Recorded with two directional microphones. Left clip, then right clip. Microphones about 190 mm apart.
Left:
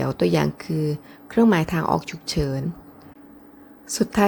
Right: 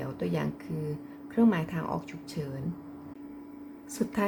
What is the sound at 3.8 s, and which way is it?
Speech, 30° left (ahead or behind).